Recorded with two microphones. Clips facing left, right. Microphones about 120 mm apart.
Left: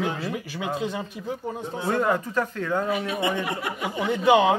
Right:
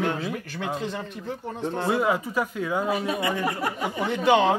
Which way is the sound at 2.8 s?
40° right (ahead or behind).